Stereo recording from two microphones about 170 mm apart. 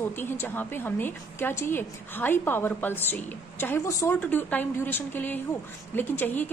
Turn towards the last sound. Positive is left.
turn(degrees=10)  # may be behind; listen again after turning